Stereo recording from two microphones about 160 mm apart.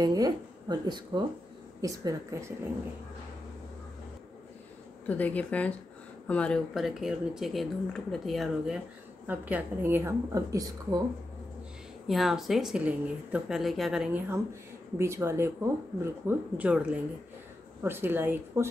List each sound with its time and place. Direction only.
0.0 s a woman's voice: 25° right (ahead or behind)
5.0 s a woman's voice: 10° left (ahead or behind); by 11.0 s 20° right (ahead or behind)
12.1 s speech: centre (ahead or behind)
14.3 s a woman's voice: 15° right (ahead or behind)